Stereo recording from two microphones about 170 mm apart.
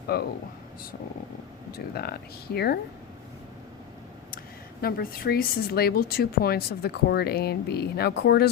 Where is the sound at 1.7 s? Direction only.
65° left (ahead or behind).